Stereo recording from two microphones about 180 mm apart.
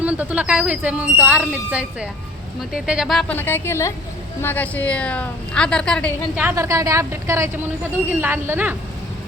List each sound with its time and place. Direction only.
0.0 s a woman's voice: 5° right (ahead or behind)
6.3 s speech: 10° right (ahead or behind)